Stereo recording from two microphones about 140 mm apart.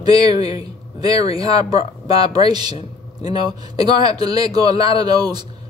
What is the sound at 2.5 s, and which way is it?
Speech, 30° right (ahead or behind).